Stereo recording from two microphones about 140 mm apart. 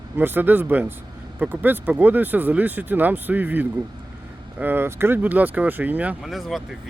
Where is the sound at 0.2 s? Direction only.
15° right (ahead or behind).